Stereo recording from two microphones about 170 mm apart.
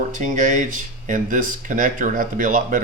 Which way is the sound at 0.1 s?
45° right (ahead or behind).